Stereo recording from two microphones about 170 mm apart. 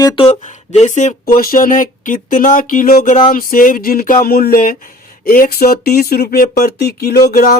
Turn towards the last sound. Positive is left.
turn(degrees=65)  # may be behind; listen again after turning